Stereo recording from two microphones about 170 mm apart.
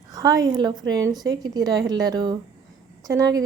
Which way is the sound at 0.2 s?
20° right (ahead or behind).